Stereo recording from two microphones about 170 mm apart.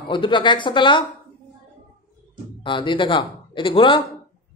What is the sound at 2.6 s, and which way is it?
A man's voice, 30° left (ahead or behind).